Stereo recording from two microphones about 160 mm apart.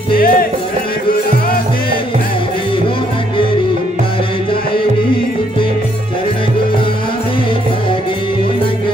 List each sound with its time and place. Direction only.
0.1 s music: 65° left (ahead or behind)